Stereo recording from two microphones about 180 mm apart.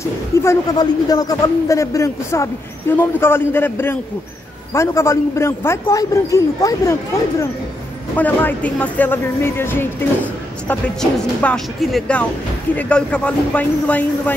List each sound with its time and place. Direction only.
0.0 s speech: 15° left (ahead or behind)